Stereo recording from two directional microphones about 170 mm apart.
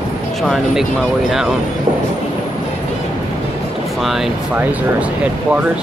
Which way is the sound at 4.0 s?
Centre (ahead or behind).